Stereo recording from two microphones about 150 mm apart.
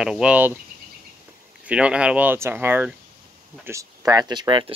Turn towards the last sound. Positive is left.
turn(degrees=-30)  # may be behind; listen again after turning